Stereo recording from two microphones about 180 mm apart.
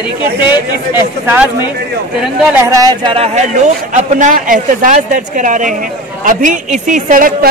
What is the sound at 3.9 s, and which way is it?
A man's voice, 45° right (ahead or behind).